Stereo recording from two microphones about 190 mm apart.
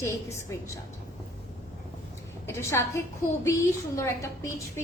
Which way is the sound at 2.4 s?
15° left (ahead or behind).